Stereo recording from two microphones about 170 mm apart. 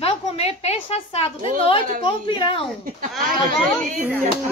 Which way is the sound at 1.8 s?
55° right (ahead or behind).